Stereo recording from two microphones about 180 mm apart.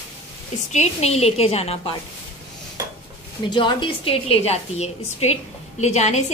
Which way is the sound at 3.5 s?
25° left (ahead or behind).